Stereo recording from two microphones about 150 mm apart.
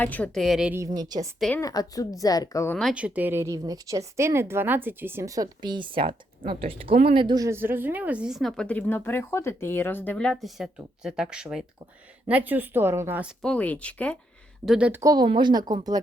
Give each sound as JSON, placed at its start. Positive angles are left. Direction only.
{"t": 0.0, "sound": "speech", "side_deg": 10}
{"t": 0.4, "sound": "speech", "side_deg": 0}
{"t": 0.9, "sound": "speech", "side_deg": -25}
{"t": 1.4, "sound": "speech", "side_deg": 5}
{"t": 1.6, "sound": "a woman's voice", "side_deg": 25}
{"t": 2.9, "sound": "a woman's voice", "side_deg": -10}
{"t": 13.4, "sound": "speech", "side_deg": 5}
{"t": 14.6, "sound": "a woman's voice", "side_deg": -5}
{"t": 15.0, "sound": "speech", "side_deg": -25}